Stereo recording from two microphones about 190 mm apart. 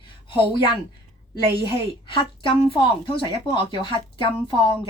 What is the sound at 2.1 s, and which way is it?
A woman's voice, 25° left (ahead or behind).